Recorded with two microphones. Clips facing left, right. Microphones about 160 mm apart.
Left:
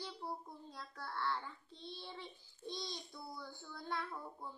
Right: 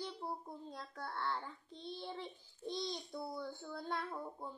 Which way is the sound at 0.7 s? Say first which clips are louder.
Left 1 dB; 50° right (ahead or behind).